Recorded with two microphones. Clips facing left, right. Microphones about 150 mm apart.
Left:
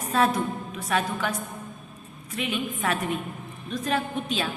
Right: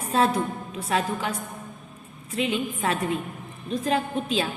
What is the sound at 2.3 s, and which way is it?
A woman's voice, 25° right (ahead or behind).